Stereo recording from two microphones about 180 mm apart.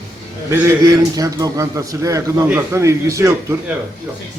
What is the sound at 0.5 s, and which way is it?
A man's voice, 15° right (ahead or behind).